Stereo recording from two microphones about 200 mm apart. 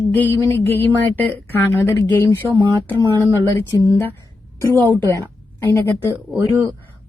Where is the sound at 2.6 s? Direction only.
20° right (ahead or behind).